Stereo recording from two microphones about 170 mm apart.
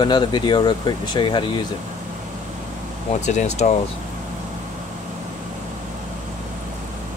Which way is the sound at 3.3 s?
45° left (ahead or behind).